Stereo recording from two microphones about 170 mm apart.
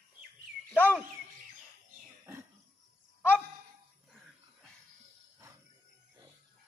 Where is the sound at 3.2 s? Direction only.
10° left (ahead or behind).